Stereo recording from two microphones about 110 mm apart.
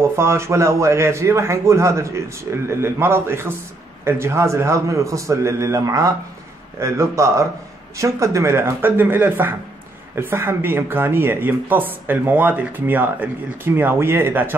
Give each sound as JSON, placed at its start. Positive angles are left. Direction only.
{"t": 0.0, "sound": "speech", "side_deg": -25}